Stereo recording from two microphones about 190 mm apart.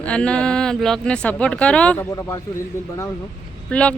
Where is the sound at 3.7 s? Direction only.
5° left (ahead or behind).